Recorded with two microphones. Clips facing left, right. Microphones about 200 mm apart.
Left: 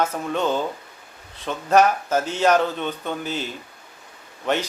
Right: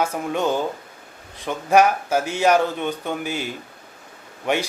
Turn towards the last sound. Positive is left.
turn(degrees=-10)  # may be behind; listen again after turning